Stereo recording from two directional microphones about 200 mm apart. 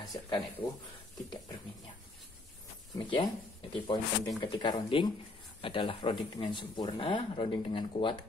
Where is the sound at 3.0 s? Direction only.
25° left (ahead or behind).